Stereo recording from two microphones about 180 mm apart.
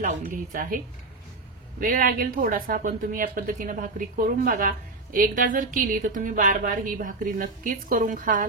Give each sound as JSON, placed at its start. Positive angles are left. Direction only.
{"t": 0.0, "sound": "speech", "side_deg": -45}
{"t": 1.8, "sound": "speech", "side_deg": -50}